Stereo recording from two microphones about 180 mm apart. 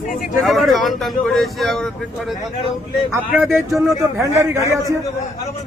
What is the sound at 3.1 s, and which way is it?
Speech, 15° right (ahead or behind).